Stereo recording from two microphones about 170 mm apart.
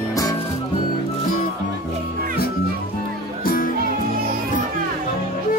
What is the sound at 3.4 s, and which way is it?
Music, 55° left (ahead or behind).